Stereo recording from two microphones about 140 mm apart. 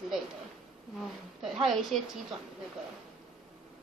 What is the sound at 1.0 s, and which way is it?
A woman's voice, 5° right (ahead or behind).